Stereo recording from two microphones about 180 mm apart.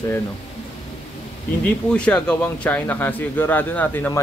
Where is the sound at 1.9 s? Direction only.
5° left (ahead or behind).